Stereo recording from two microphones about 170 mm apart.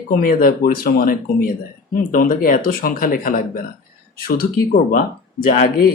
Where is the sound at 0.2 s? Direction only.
55° left (ahead or behind).